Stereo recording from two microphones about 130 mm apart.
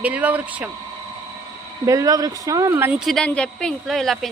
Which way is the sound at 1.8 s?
25° right (ahead or behind).